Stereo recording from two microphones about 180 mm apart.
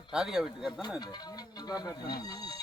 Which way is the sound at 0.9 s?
20° left (ahead or behind).